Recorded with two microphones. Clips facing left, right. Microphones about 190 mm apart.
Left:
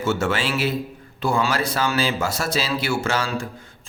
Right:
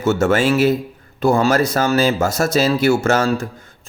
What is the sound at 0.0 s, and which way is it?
Speech, 45° right (ahead or behind).